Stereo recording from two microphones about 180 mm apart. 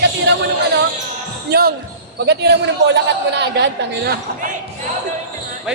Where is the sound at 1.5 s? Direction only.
60° right (ahead or behind).